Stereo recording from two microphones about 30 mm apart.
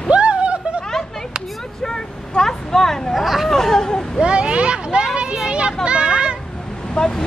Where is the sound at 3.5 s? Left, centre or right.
Centre.